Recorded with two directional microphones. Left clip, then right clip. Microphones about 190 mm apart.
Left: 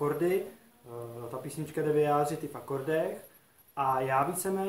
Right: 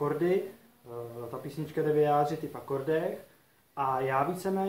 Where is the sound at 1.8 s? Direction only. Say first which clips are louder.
Right 1 dB; 10° left (ahead or behind).